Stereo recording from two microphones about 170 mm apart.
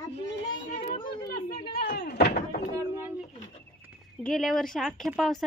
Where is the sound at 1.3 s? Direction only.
60° left (ahead or behind).